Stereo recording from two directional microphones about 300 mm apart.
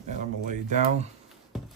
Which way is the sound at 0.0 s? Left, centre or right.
Right.